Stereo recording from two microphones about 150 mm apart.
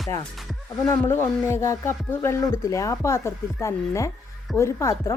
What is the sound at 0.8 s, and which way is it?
Speech, 15° left (ahead or behind).